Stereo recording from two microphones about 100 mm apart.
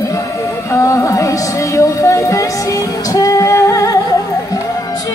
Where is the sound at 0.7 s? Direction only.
30° left (ahead or behind).